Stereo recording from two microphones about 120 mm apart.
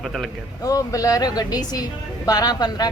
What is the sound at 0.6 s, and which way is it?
A woman's voice, 30° left (ahead or behind).